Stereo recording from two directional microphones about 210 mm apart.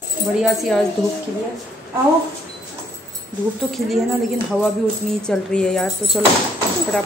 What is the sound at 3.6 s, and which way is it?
Speech, centre (ahead or behind).